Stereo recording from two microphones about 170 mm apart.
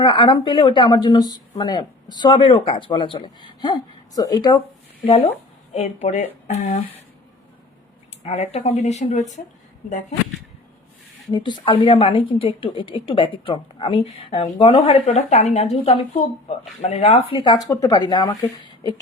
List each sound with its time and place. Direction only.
0.0 s a woman's voice: 30° left (ahead or behind); by 6.8 s 45° left (ahead or behind)
8.2 s a woman's voice: 40° left (ahead or behind)
11.3 s a woman's voice: 25° left (ahead or behind)